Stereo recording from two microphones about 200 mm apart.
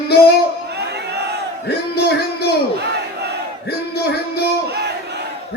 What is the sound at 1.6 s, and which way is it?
Speech, 55° left (ahead or behind).